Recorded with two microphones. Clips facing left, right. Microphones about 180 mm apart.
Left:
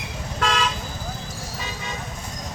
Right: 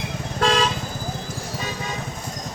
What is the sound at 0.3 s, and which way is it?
Vehicle, 35° right (ahead or behind).